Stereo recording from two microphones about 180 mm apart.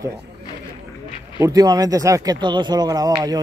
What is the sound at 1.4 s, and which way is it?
Speech, 20° right (ahead or behind).